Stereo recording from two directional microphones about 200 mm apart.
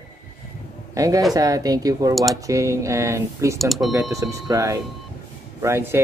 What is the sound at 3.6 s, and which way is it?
Speech, centre (ahead or behind).